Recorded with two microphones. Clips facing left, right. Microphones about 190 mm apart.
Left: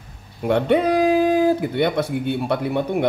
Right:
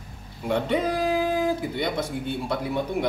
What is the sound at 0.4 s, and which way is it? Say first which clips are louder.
Speech: left 6 dB; 60° left (ahead or behind).